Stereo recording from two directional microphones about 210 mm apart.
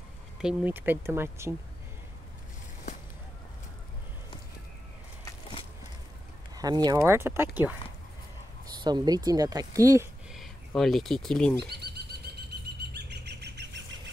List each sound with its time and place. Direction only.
0.4 s speech: 5° right (ahead or behind)
6.5 s speech: 20° right (ahead or behind)
8.8 s speech: 20° right (ahead or behind)
10.3 s speech: centre (ahead or behind)
12.9 s bird: 55° right (ahead or behind)